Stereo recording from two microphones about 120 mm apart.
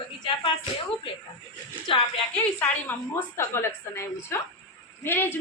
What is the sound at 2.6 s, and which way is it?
A woman's voice, 20° left (ahead or behind).